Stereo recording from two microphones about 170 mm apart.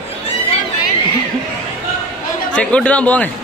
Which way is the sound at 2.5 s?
5° left (ahead or behind).